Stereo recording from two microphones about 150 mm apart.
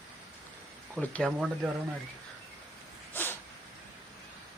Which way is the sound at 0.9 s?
10° left (ahead or behind).